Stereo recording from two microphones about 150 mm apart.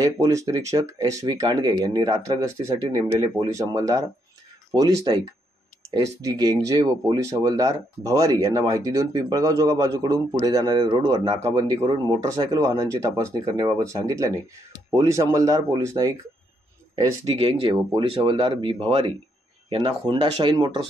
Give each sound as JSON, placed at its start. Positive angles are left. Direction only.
{"t": 0.0, "sound": "speech", "side_deg": -20}
{"t": 17.4, "sound": "speech", "side_deg": -40}